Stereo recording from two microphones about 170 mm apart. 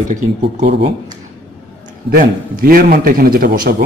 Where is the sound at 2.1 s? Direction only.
60° right (ahead or behind).